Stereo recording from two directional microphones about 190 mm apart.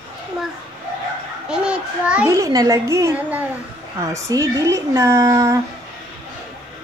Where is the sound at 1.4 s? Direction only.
5° right (ahead or behind).